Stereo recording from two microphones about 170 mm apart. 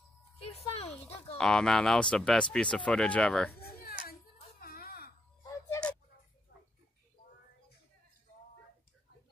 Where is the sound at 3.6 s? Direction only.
65° left (ahead or behind).